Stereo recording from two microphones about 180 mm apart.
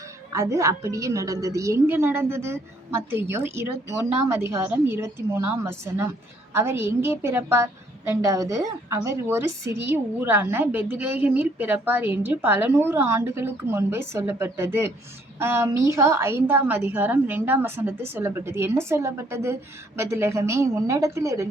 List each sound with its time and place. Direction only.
0.3 s a woman's voice: 15° right (ahead or behind)